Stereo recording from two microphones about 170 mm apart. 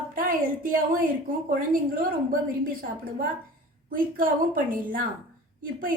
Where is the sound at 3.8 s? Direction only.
55° right (ahead or behind).